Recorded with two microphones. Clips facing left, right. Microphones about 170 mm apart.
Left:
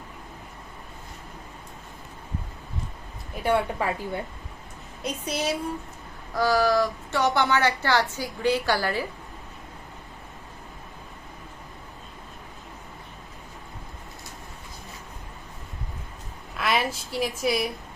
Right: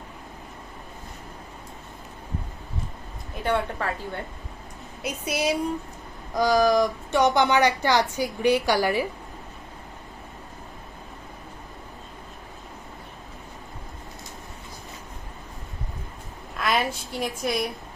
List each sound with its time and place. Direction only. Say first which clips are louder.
3.4 s a woman's voice: left 2 dB; 10° left (ahead or behind)
5.0 s speech: right 2 dB; 10° right (ahead or behind)
16.6 s a sound: right 1 dB; centre (ahead or behind)